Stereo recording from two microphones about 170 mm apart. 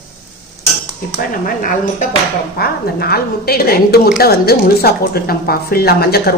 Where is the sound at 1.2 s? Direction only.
55° left (ahead or behind).